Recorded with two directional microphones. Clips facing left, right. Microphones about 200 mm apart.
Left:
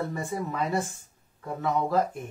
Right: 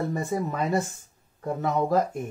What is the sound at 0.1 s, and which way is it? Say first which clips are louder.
Speech: right 4 dB; 45° right (ahead or behind).